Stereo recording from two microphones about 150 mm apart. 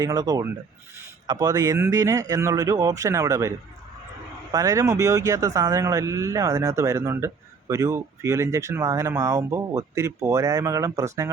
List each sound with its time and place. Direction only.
0.0 s speech: 25° right (ahead or behind)
4.5 s speech: 20° right (ahead or behind)